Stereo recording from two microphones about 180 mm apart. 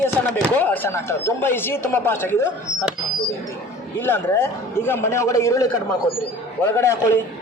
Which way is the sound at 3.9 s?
10° left (ahead or behind).